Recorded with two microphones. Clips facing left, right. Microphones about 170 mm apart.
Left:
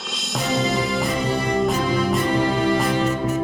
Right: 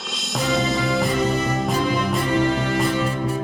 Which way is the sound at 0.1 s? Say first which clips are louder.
Right 1 dB; centre (ahead or behind).